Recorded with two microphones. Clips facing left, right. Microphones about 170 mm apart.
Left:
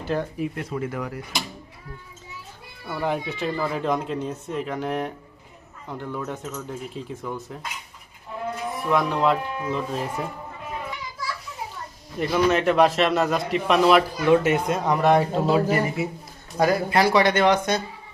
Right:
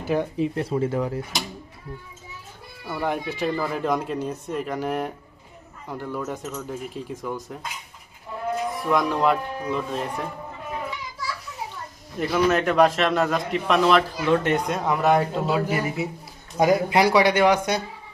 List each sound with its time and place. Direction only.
0.0 s speech: 10° right (ahead or behind)
0.3 s speech: 30° right (ahead or behind)
2.8 s a man's voice: centre (ahead or behind)
8.9 s a man's voice: centre (ahead or behind)
12.2 s a man's voice: centre (ahead or behind)
16.6 s speech: 15° right (ahead or behind)